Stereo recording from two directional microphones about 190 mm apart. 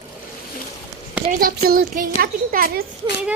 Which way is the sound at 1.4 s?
50° right (ahead or behind).